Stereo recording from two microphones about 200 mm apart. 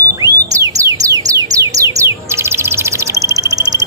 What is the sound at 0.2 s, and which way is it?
Music, 15° right (ahead or behind).